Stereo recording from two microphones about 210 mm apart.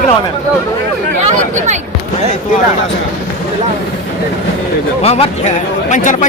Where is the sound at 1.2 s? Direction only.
35° right (ahead or behind).